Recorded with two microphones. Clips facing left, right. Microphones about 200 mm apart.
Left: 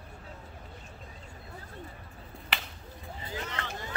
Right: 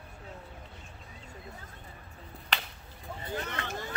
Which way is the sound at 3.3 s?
55° right (ahead or behind).